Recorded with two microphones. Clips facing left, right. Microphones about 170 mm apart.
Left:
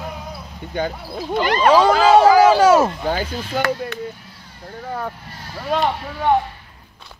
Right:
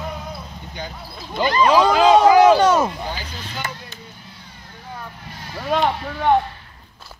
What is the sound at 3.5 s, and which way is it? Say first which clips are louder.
Speech: left 12 dB; 65° left (ahead or behind).